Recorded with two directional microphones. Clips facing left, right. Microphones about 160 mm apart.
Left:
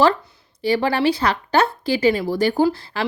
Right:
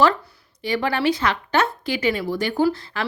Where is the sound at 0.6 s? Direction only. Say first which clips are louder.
Left 3 dB; 30° left (ahead or behind).